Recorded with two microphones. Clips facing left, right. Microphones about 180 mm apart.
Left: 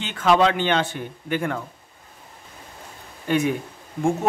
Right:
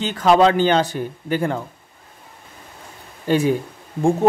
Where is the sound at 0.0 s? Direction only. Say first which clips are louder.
Right 4 dB; 35° right (ahead or behind).